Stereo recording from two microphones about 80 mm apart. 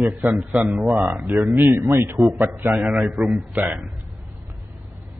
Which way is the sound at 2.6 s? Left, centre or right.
Centre.